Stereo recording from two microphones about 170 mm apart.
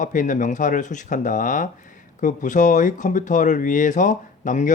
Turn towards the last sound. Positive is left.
turn(degrees=45)  # may be behind; listen again after turning